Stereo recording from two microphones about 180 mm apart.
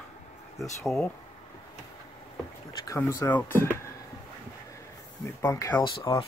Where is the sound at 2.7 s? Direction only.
15° left (ahead or behind).